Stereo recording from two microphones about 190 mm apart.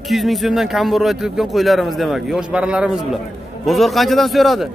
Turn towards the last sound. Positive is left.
turn(degrees=0)  # may be behind; listen again after turning